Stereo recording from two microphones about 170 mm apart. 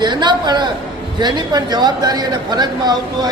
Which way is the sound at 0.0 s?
25° right (ahead or behind).